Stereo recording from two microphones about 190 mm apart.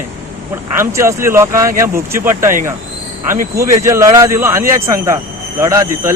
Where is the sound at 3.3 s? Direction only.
50° right (ahead or behind).